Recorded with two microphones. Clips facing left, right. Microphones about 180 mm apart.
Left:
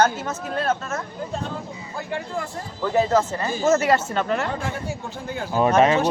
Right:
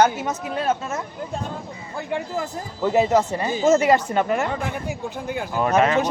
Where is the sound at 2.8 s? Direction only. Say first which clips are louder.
Right 2 dB; 20° right (ahead or behind).